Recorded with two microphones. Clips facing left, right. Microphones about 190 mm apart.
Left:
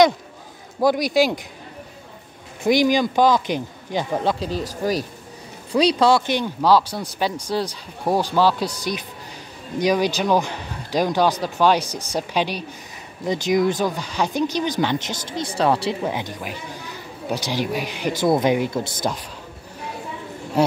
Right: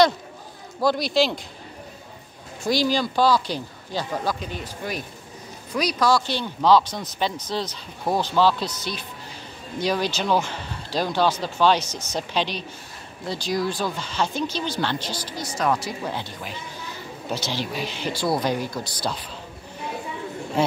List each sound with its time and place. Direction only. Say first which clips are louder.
0.7 s speech: left 3 dB; 15° left (ahead or behind)
2.7 s speech: left 5 dB; 15° left (ahead or behind)
15.5 s speech: left 4 dB; 30° left (ahead or behind)
16.1 s speech: left 4 dB; 15° left (ahead or behind)